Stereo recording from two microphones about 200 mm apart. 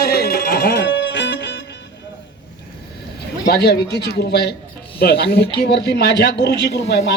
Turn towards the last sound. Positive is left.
turn(degrees=55)  # may be behind; listen again after turning